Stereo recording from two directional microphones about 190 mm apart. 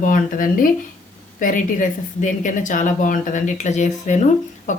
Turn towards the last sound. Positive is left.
turn(degrees=40)  # may be behind; listen again after turning